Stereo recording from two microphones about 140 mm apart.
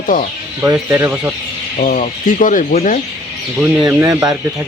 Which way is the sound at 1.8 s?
75° left (ahead or behind).